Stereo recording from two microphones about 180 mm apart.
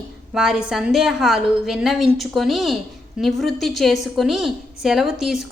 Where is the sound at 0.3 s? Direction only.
5° right (ahead or behind).